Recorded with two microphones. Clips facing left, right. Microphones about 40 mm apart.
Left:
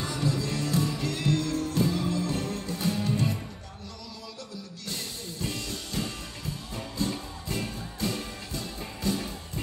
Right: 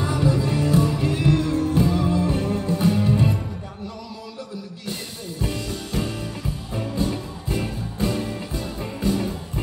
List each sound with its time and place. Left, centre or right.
0.0 s music: right
5.4 s music: centre